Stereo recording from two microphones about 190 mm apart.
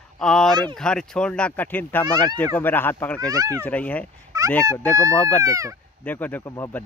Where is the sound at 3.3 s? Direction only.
15° right (ahead or behind).